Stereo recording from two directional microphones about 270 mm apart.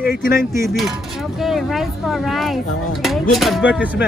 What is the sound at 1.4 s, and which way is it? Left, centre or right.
Speech, centre.